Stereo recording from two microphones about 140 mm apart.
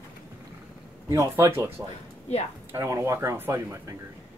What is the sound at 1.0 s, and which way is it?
Speech, 20° right (ahead or behind).